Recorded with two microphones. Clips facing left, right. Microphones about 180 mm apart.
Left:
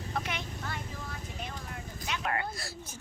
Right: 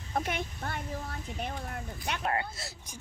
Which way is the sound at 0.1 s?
50° right (ahead or behind).